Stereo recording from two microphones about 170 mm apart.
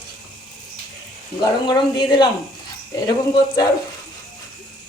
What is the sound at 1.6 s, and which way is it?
A woman's voice, 25° left (ahead or behind).